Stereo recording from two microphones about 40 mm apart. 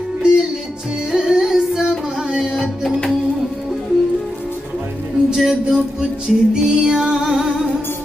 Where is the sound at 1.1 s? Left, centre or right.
Centre.